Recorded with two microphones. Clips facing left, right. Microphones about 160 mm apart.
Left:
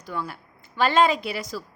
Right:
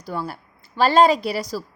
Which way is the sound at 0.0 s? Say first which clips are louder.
Right 3 dB; 35° right (ahead or behind).